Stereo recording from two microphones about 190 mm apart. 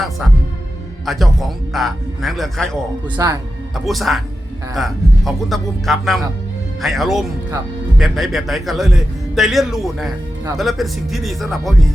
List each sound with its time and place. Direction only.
1.0 s speech: centre (ahead or behind)
3.2 s speech: 15° right (ahead or behind)
3.8 s speech: centre (ahead or behind)